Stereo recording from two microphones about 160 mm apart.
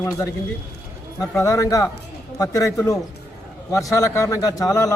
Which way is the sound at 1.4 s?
20° left (ahead or behind).